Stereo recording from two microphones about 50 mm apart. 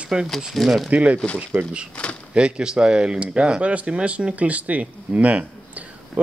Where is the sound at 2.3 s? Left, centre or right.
Centre.